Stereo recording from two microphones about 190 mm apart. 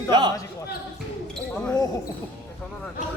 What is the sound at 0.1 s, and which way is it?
Speech, 20° right (ahead or behind).